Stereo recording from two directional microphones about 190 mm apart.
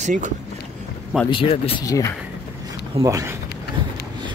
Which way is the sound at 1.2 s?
30° left (ahead or behind).